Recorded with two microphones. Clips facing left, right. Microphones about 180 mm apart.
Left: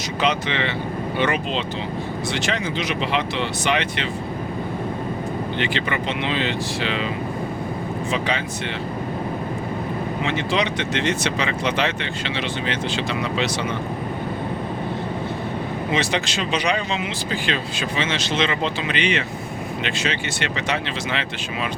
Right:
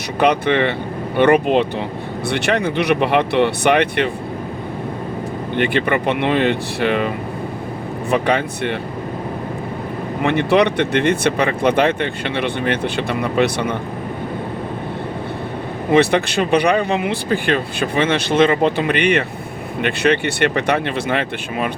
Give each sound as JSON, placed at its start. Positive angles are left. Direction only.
{"t": 0.2, "sound": "speech", "side_deg": -55}
{"t": 5.5, "sound": "speech", "side_deg": -55}
{"t": 8.1, "sound": "speech", "side_deg": -55}
{"t": 10.2, "sound": "speech", "side_deg": -60}
{"t": 15.9, "sound": "speech", "side_deg": -55}